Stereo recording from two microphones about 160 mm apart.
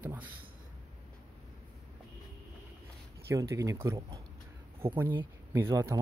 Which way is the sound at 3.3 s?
20° right (ahead or behind).